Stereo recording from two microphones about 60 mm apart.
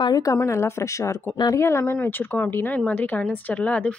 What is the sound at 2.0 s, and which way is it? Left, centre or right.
A woman's voice, left.